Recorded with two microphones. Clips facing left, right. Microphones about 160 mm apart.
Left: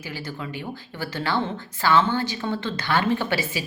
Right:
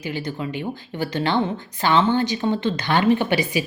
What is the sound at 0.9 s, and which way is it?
A woman's voice, 20° right (ahead or behind).